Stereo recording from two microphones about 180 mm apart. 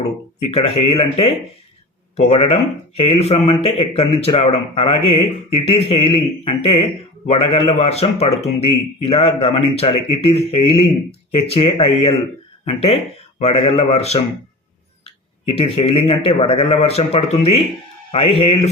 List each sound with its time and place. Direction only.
0.4 s speech: 35° left (ahead or behind)
2.1 s speech: 35° left (ahead or behind)